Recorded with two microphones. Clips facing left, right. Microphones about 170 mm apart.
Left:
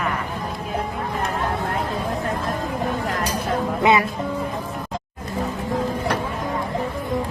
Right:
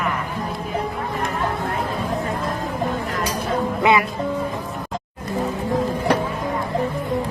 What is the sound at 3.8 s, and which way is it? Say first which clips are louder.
Music: even; 20° left (ahead or behind).